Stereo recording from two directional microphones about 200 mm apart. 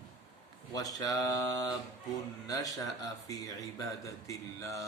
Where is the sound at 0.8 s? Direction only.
20° left (ahead or behind).